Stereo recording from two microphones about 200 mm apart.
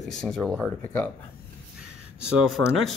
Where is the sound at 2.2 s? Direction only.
5° right (ahead or behind).